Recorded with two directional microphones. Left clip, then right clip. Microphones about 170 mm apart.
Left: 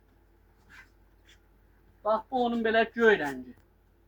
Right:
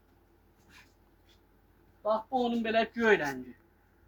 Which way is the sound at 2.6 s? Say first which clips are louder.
Left 4 dB; 20° right (ahead or behind).